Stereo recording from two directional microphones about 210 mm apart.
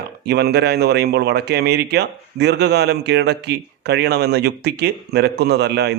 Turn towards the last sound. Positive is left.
turn(degrees=-50)  # may be behind; listen again after turning